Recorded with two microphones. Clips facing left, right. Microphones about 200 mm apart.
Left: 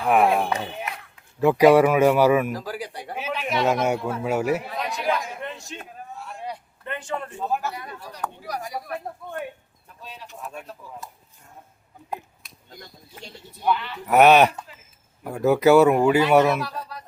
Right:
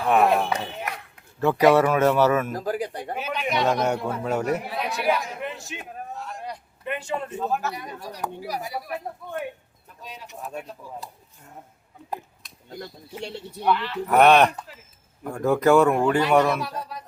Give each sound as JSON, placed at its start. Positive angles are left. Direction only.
{"t": 0.0, "sound": "a man's voice", "side_deg": 10}
{"t": 2.6, "sound": "pigeon", "side_deg": -50}
{"t": 3.2, "sound": "a man's voice", "side_deg": 5}
{"t": 4.7, "sound": "a sound", "side_deg": -10}
{"t": 6.2, "sound": "vehicle", "side_deg": 5}
{"t": 6.8, "sound": "a sound", "side_deg": -15}
{"t": 7.3, "sound": "a man's voice", "side_deg": 10}
{"t": 7.7, "sound": "speech", "side_deg": -15}
{"t": 10.5, "sound": "speech", "side_deg": -5}
{"t": 13.2, "sound": "speech", "side_deg": -75}
{"t": 13.7, "sound": "speech", "side_deg": 5}